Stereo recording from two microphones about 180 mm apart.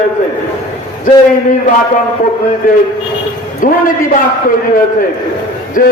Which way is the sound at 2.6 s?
50° left (ahead or behind).